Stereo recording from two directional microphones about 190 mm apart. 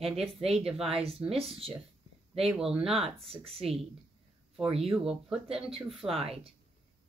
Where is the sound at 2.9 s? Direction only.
30° right (ahead or behind).